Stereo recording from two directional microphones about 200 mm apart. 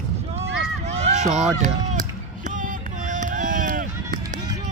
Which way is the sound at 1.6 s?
40° right (ahead or behind).